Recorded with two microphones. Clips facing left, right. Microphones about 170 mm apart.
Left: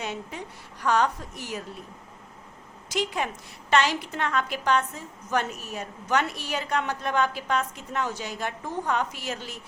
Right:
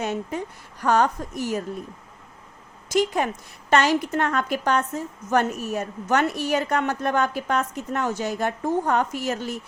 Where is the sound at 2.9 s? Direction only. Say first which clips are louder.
Right 6 dB; 45° right (ahead or behind).